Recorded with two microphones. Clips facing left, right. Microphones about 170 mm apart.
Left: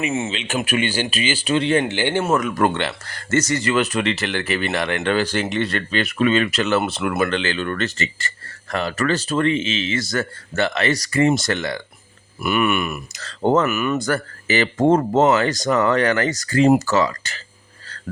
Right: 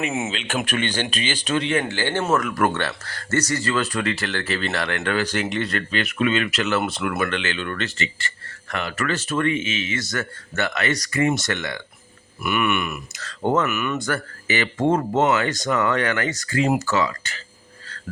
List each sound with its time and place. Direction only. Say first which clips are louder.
0.0 s speech: left 2 dB; centre (ahead or behind)
1.5 s speech: left 4 dB; 30° left (ahead or behind)
1.8 s speech: left 3 dB; 20° left (ahead or behind)
5.1 s speech: left 1 dB; 30° left (ahead or behind)